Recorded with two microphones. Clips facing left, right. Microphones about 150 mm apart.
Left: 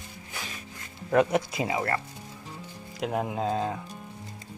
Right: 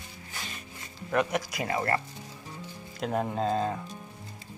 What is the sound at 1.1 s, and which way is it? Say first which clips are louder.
Speech: left 5 dB; 25° left (ahead or behind).